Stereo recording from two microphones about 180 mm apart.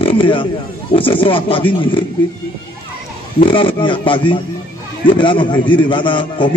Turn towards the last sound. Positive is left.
turn(degrees=25)  # may be behind; listen again after turning